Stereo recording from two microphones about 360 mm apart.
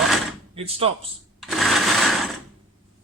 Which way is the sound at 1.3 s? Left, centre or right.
Centre.